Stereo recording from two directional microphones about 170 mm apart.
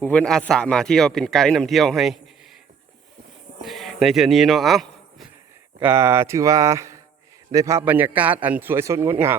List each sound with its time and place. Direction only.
0.0 s speech: 10° left (ahead or behind)
3.6 s speech: centre (ahead or behind)
5.8 s a man's voice: 15° right (ahead or behind)